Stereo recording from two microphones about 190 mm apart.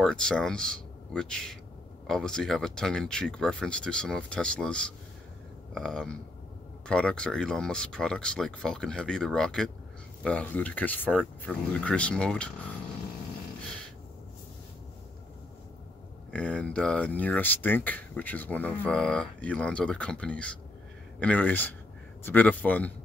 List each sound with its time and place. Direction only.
0.0 s speech: 5° left (ahead or behind)
16.3 s speech: 5° left (ahead or behind)